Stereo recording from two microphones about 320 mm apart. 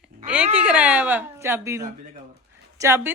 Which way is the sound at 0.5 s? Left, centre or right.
Centre.